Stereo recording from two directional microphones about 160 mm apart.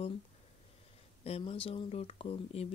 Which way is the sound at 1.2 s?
35° left (ahead or behind).